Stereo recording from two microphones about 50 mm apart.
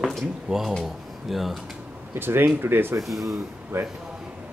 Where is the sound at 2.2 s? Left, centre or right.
Right.